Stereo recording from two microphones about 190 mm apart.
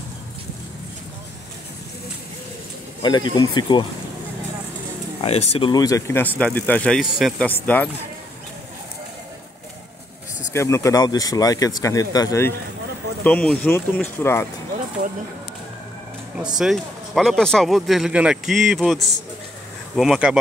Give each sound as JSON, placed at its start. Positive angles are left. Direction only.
{"t": 3.0, "sound": "speech", "side_deg": 20}
{"t": 5.2, "sound": "speech", "side_deg": 35}
{"t": 5.7, "sound": "speech", "side_deg": 20}
{"t": 10.5, "sound": "speech", "side_deg": 15}
{"t": 16.5, "sound": "speech", "side_deg": 0}